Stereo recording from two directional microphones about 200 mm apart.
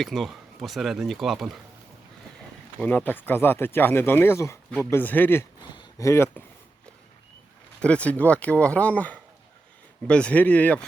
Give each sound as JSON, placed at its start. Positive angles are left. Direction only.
{"t": 0.0, "sound": "speech", "side_deg": 0}
{"t": 2.7, "sound": "speech", "side_deg": 10}
{"t": 7.8, "sound": "speech", "side_deg": 5}